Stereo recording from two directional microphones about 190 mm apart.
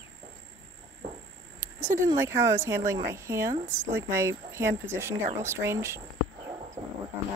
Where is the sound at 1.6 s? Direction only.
15° right (ahead or behind).